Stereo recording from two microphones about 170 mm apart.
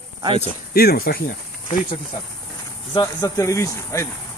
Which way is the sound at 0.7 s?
65° left (ahead or behind).